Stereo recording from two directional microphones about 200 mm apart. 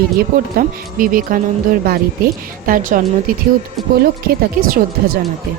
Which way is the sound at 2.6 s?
40° right (ahead or behind).